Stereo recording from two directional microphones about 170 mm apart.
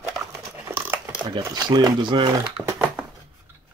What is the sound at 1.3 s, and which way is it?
Speech, 25° right (ahead or behind).